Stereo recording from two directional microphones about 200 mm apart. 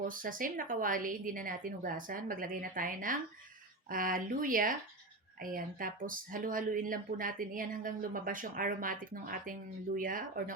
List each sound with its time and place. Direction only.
0.1 s speech: 45° right (ahead or behind)